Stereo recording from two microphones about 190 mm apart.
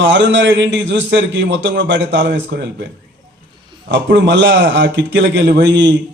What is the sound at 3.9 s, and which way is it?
A man's voice, 70° right (ahead or behind).